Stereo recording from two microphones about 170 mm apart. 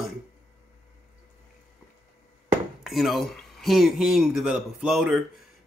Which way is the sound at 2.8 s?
Centre (ahead or behind).